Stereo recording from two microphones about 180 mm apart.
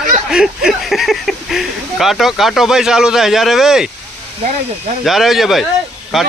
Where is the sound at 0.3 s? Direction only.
5° right (ahead or behind).